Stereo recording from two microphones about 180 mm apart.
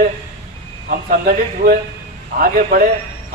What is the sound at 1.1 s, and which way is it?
A man's voice, 55° right (ahead or behind).